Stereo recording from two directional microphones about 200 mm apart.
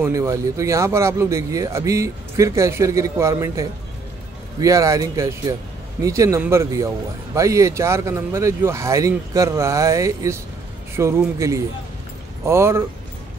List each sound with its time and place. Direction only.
0.0 s speech: 15° right (ahead or behind)